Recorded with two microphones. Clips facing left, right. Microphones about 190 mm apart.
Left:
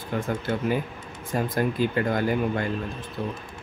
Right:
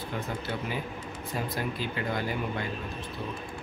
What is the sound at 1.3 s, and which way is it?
Speech, 50° left (ahead or behind).